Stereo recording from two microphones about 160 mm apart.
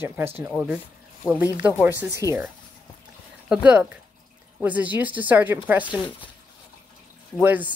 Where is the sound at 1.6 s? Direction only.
10° right (ahead or behind).